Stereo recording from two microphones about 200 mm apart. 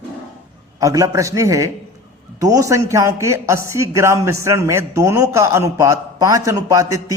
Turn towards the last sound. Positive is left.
turn(degrees=-15)  # may be behind; listen again after turning